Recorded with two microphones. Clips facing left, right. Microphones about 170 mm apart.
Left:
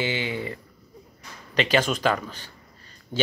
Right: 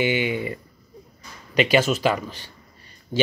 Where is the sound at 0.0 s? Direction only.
15° right (ahead or behind).